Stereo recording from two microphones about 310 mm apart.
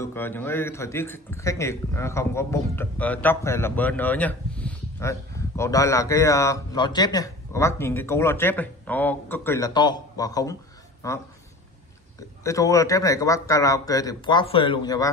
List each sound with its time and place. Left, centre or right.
0.0 s a man's voice: centre
12.2 s a man's voice: centre